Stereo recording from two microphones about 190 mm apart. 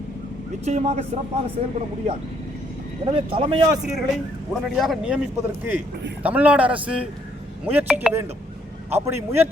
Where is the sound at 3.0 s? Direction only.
30° right (ahead or behind).